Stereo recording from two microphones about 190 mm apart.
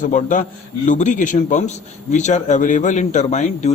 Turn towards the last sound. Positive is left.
turn(degrees=40)  # may be behind; listen again after turning